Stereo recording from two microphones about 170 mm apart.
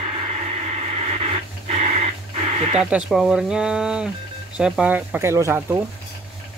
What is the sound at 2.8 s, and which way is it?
Speech, 5° right (ahead or behind).